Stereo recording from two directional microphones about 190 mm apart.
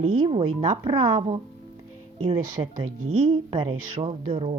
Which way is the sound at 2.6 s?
25° right (ahead or behind).